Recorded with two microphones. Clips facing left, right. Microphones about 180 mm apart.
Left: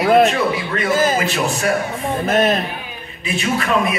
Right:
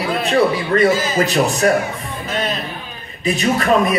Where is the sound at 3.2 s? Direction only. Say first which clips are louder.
Right 4 dB; 40° right (ahead or behind).